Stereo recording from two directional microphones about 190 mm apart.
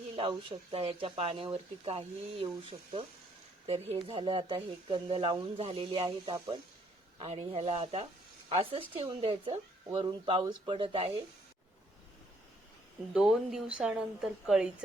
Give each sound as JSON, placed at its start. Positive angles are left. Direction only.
{"t": 0.2, "sound": "speech", "side_deg": -30}
{"t": 13.1, "sound": "a woman's voice", "side_deg": 0}